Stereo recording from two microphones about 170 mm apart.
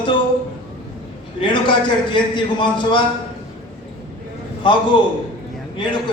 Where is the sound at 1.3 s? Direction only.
30° left (ahead or behind).